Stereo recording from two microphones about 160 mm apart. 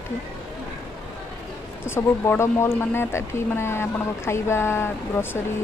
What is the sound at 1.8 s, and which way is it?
Speech, 15° left (ahead or behind).